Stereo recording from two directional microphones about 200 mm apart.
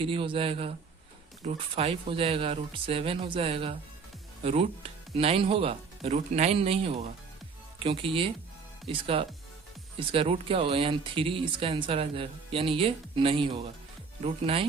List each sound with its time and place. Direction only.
0.0 s speech: 25° right (ahead or behind)